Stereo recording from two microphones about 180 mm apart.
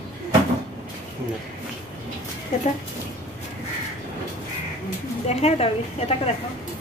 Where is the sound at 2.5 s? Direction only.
40° left (ahead or behind).